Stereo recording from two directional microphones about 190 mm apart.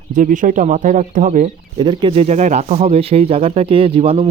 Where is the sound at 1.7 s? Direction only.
25° right (ahead or behind).